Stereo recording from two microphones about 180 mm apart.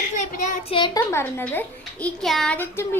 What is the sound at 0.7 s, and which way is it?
Speech, 25° left (ahead or behind).